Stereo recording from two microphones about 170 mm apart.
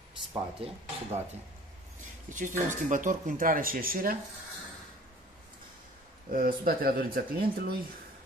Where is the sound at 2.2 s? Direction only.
50° right (ahead or behind).